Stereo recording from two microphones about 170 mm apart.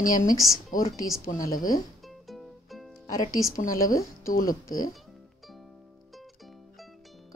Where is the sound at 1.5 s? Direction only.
55° left (ahead or behind).